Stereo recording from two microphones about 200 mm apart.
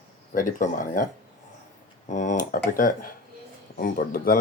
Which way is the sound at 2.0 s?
40° left (ahead or behind).